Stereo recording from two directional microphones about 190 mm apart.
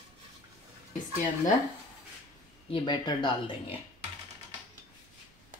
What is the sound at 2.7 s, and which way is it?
Speech, 25° left (ahead or behind).